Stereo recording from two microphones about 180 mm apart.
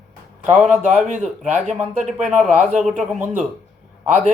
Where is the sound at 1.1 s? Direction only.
45° right (ahead or behind).